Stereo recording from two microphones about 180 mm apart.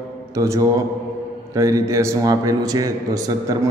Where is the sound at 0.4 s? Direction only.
15° right (ahead or behind).